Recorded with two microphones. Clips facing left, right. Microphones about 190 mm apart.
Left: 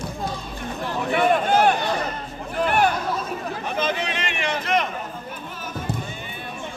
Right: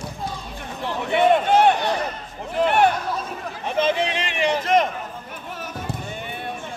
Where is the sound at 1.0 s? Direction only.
25° right (ahead or behind); by 4.8 s 40° right (ahead or behind).